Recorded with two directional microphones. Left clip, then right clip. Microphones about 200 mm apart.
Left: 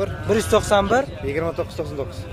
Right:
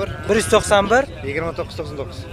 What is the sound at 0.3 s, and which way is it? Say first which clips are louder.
Speech: right 3 dB; 5° right (ahead or behind).